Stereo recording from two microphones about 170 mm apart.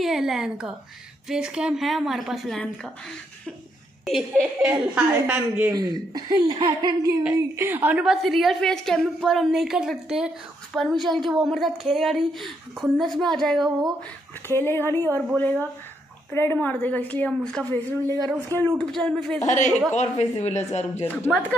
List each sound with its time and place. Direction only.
0.0 s a woman's voice: centre (ahead or behind)
4.0 s a woman's voice: centre (ahead or behind)
5.8 s a woman's voice: 25° right (ahead or behind)
7.3 s a woman's voice: 15° right (ahead or behind); by 13.9 s centre (ahead or behind)
14.5 s a woman's voice: 15° left (ahead or behind)
18.5 s a woman's voice: 15° right (ahead or behind)
18.8 s a woman's voice: 5° left (ahead or behind)
19.4 s a man's voice: 45° left (ahead or behind)
21.0 s a woman's voice: 15° left (ahead or behind)